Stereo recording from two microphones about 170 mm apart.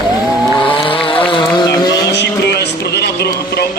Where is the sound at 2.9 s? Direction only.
75° left (ahead or behind).